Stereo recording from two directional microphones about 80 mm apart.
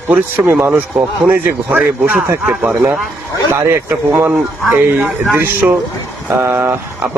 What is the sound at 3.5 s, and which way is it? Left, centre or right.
Speech, right.